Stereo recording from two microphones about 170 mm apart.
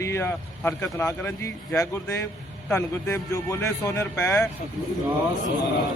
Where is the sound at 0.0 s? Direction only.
15° left (ahead or behind).